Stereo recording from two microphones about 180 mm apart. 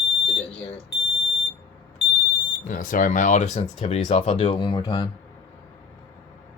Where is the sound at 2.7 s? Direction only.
50° left (ahead or behind); by 5.0 s 25° left (ahead or behind).